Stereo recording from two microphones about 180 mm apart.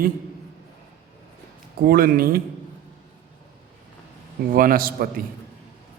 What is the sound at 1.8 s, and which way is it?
Speech, 55° right (ahead or behind).